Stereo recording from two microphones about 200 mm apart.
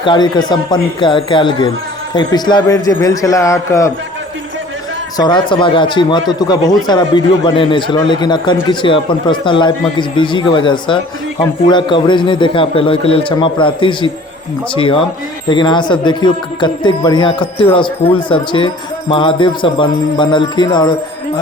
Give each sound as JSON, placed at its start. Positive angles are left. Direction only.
{"t": 0.0, "sound": "a man's voice", "side_deg": 20}
{"t": 5.1, "sound": "speech", "side_deg": 20}